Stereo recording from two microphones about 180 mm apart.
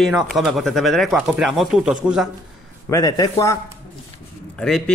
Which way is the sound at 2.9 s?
20° left (ahead or behind).